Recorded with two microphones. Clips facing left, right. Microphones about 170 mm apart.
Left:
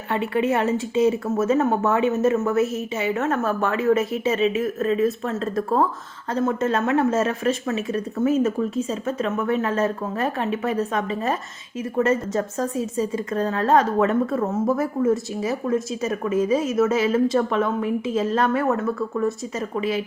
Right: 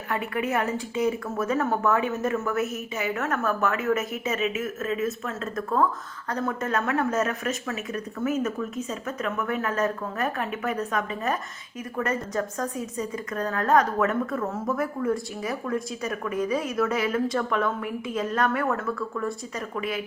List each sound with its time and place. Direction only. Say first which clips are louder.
0.1 s a woman's voice: left 6 dB; 25° left (ahead or behind)